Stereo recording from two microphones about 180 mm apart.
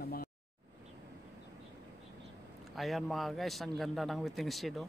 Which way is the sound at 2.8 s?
Centre (ahead or behind).